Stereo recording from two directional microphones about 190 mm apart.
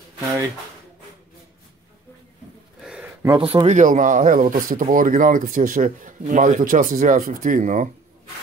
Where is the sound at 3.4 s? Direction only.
30° right (ahead or behind).